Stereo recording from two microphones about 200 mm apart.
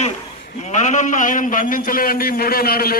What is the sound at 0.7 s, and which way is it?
A man's voice, 35° left (ahead or behind).